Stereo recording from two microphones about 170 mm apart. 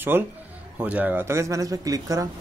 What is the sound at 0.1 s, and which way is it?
A man's voice, 10° right (ahead or behind).